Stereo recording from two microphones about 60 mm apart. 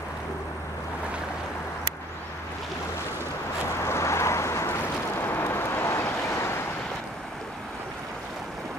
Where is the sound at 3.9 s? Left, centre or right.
Left.